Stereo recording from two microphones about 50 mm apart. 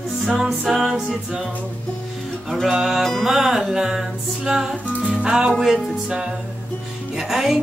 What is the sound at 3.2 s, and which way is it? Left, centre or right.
Music, centre.